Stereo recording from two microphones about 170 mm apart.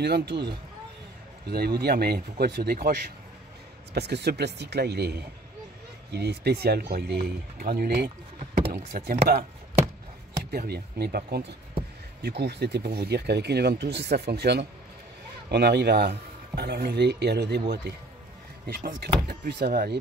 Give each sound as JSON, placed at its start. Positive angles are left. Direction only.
{"t": 0.0, "sound": "speech", "side_deg": -75}
{"t": 3.9, "sound": "speech", "side_deg": -75}
{"t": 10.5, "sound": "speech", "side_deg": -65}
{"t": 18.7, "sound": "speech", "side_deg": -55}
{"t": 19.2, "sound": "speech", "side_deg": -65}